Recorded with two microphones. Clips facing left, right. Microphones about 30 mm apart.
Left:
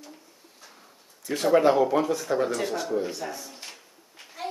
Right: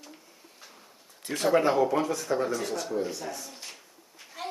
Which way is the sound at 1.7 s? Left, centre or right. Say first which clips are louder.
Left 3 dB; centre.